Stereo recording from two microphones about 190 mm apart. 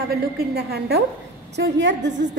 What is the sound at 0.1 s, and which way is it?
Speech, 55° right (ahead or behind).